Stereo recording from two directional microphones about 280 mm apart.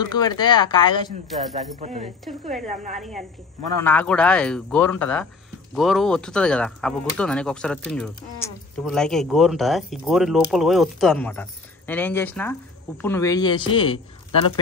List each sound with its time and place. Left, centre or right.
0.0 s speech: centre
1.8 s speech: right
3.8 s speech: centre